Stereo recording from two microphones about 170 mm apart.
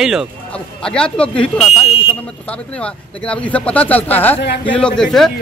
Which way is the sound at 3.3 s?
5° left (ahead or behind).